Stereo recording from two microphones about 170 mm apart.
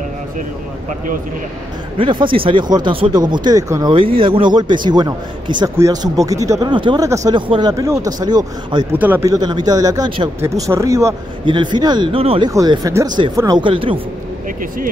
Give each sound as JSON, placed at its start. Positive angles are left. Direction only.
{"t": 0.8, "sound": "speech", "side_deg": -55}
{"t": 2.0, "sound": "a man's voice", "side_deg": -30}
{"t": 3.9, "sound": "a man's voice", "side_deg": -30}
{"t": 9.0, "sound": "speech", "side_deg": -10}
{"t": 9.3, "sound": "a man's voice", "side_deg": -25}
{"t": 10.7, "sound": "speech", "side_deg": -15}
{"t": 11.4, "sound": "a man's voice", "side_deg": -25}
{"t": 12.4, "sound": "a man's voice", "side_deg": -20}